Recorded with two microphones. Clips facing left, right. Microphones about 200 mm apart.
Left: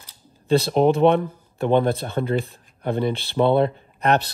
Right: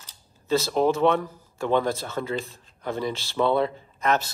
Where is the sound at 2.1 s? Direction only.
60° left (ahead or behind).